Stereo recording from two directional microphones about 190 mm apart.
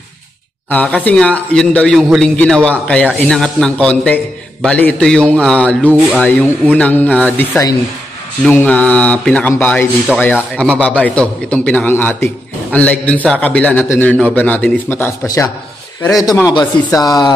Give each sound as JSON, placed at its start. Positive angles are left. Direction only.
{"t": 0.7, "sound": "a man's voice", "side_deg": 5}